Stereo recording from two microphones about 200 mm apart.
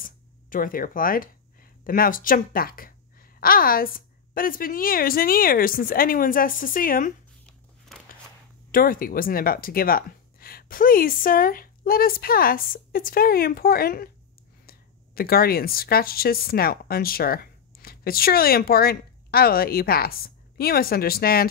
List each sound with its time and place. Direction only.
0.0 s speech: 45° left (ahead or behind)
8.7 s speech: 45° left (ahead or behind)